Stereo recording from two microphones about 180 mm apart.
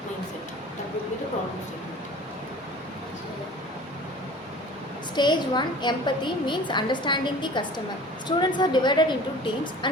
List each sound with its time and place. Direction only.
5.1 s a woman's voice: 25° left (ahead or behind)